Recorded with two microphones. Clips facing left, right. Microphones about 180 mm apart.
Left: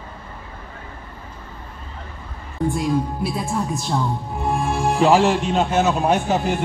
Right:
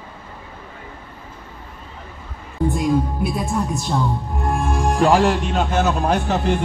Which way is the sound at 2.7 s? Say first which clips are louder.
Right 3 dB; centre (ahead or behind).